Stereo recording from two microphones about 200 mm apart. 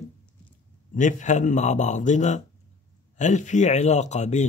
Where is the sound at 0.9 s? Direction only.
40° left (ahead or behind).